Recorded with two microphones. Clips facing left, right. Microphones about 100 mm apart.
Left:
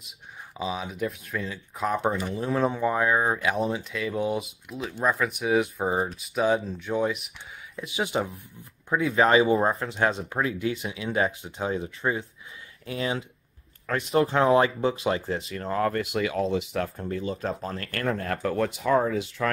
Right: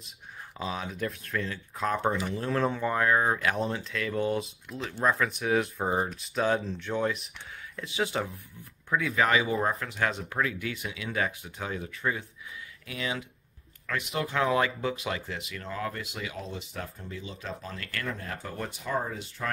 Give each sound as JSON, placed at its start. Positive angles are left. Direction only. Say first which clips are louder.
{"t": 0.6, "sound": "speech", "louder": "left 3 dB", "side_deg": 10}
{"t": 17.0, "sound": "speech", "louder": "left 10 dB", "side_deg": 50}
{"t": 18.0, "sound": "speech", "louder": "left 12 dB", "side_deg": 65}